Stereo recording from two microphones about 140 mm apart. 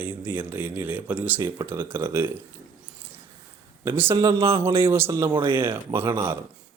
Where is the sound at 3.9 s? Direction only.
15° right (ahead or behind).